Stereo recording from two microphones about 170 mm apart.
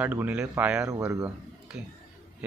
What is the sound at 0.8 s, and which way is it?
Speech, 20° right (ahead or behind).